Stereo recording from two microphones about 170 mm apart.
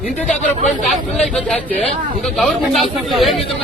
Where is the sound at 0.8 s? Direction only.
Centre (ahead or behind).